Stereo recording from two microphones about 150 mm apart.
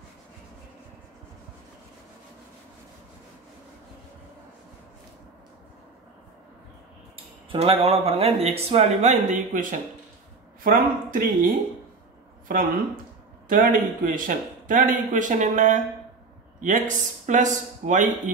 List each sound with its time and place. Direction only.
7.5 s speech: 40° right (ahead or behind); by 9.8 s 60° right (ahead or behind)
10.6 s a man's voice: 75° right (ahead or behind); by 18.3 s 55° right (ahead or behind)